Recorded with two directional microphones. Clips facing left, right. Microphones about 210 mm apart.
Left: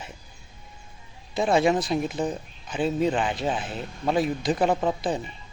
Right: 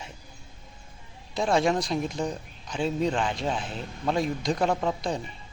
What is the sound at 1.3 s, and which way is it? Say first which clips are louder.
A man's voice: left 3 dB; 5° left (ahead or behind).